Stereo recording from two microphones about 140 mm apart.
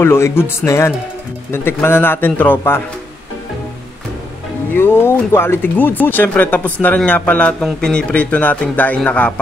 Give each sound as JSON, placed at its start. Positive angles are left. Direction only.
{"t": 0.0, "sound": "speech", "side_deg": 15}
{"t": 4.7, "sound": "speech", "side_deg": 15}